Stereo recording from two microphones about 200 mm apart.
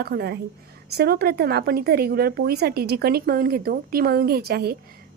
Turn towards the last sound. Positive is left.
turn(degrees=-50)  # may be behind; listen again after turning